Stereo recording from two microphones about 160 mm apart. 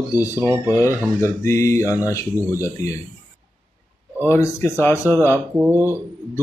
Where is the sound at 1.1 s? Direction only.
15° left (ahead or behind).